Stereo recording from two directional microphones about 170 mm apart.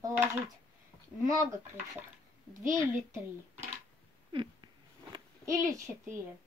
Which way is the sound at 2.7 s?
15° right (ahead or behind).